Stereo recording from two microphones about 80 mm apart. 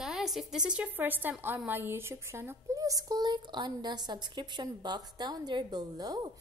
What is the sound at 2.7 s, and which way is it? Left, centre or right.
A woman's voice, right.